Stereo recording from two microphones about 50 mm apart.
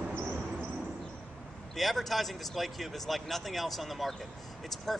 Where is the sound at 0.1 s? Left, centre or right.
Left.